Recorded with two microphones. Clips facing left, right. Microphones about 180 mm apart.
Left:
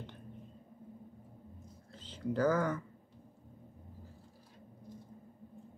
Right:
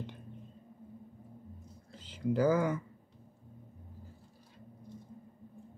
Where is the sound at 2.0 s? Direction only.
10° right (ahead or behind).